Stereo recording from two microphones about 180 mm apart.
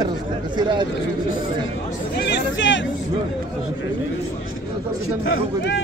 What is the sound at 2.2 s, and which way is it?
Speech, 70° left (ahead or behind).